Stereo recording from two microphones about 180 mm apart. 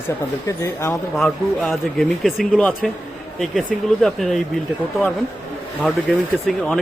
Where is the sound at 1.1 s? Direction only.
Centre (ahead or behind).